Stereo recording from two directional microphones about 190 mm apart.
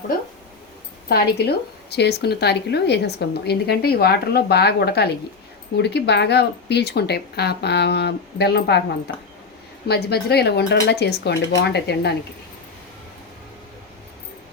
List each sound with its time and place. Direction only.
1.0 s speech: 55° left (ahead or behind)
9.9 s speech: 60° left (ahead or behind)